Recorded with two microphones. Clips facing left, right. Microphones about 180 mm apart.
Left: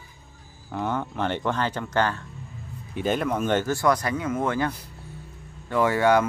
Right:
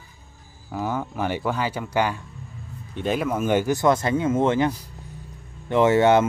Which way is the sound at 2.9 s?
Centre (ahead or behind).